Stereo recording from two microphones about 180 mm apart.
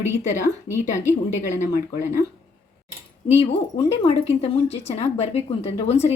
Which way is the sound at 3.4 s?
35° left (ahead or behind).